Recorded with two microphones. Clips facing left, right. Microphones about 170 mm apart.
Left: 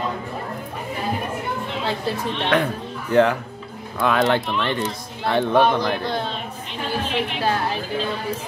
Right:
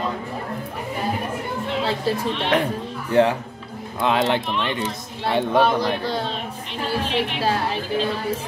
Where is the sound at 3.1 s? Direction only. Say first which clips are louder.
Left 1 dB; 25° right (ahead or behind).